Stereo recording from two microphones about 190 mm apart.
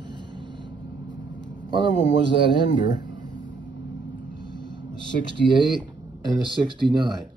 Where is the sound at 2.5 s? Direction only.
25° right (ahead or behind).